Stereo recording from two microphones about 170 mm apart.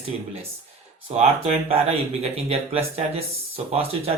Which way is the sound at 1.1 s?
35° right (ahead or behind).